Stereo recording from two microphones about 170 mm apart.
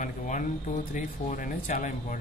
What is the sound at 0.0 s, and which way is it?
Speech, 50° left (ahead or behind).